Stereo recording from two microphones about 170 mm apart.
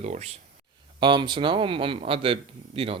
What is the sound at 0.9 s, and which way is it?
Speech, 25° right (ahead or behind).